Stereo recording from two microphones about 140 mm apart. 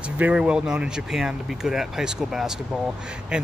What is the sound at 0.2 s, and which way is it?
Speech, 5° right (ahead or behind).